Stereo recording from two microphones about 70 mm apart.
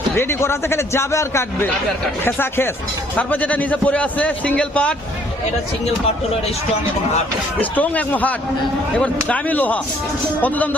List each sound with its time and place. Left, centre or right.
0.2 s a man's voice: left
2.2 s a man's voice: left
7.6 s a man's voice: left